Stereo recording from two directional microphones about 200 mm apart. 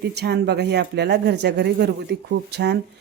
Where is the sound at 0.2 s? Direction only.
55° right (ahead or behind).